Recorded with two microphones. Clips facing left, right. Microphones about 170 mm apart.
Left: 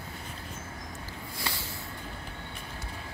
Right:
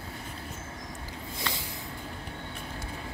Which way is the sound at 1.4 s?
20° right (ahead or behind).